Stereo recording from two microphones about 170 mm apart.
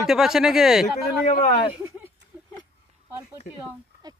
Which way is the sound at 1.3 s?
55° left (ahead or behind).